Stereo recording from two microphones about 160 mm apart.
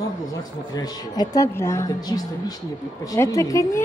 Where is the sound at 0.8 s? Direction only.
25° left (ahead or behind).